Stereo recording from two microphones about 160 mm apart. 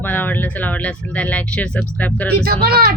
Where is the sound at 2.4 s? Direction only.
70° right (ahead or behind).